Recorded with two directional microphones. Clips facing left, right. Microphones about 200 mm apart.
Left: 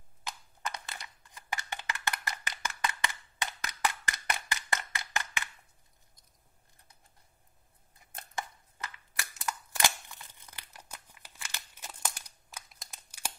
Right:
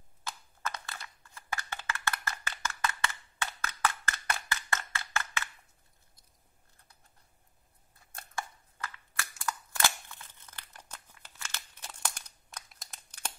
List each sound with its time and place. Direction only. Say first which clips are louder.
0.2 s a sound: even; 20° left (ahead or behind)
8.1 s scissors: even; 20° left (ahead or behind)
12.7 s crumpling: even; 5° left (ahead or behind)